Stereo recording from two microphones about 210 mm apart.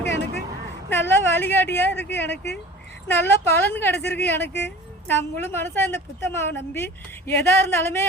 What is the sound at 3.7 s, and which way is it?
A woman's voice, 10° left (ahead or behind).